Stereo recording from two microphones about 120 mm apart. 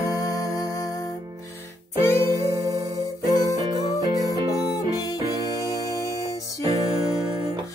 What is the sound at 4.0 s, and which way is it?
Music, 30° right (ahead or behind).